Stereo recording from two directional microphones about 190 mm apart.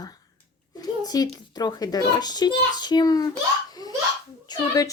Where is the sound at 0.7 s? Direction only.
20° left (ahead or behind).